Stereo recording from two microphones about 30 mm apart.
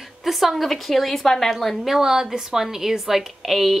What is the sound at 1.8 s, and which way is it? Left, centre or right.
Speech, centre.